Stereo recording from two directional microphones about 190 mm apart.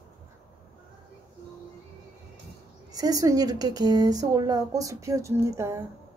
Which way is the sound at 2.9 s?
20° right (ahead or behind).